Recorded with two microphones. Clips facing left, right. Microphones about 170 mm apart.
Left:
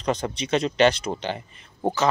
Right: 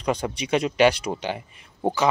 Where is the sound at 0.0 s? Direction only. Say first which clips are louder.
Even; 10° right (ahead or behind).